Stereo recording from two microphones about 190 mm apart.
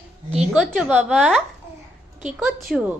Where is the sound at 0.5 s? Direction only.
Centre (ahead or behind).